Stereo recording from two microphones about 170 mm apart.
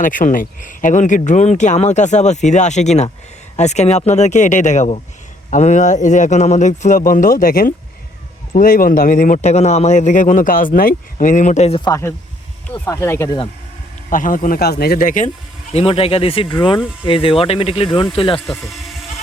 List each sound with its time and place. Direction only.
0.0 s a man's voice: 50° left (ahead or behind)
11.9 s speech: 15° left (ahead or behind)
14.1 s a man's voice: 50° left (ahead or behind)
15.7 s speech: 35° left (ahead or behind)